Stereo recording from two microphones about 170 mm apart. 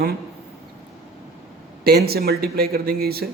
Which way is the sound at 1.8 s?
65° right (ahead or behind).